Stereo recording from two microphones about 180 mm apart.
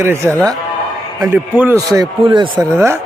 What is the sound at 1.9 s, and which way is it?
Speech, 25° right (ahead or behind).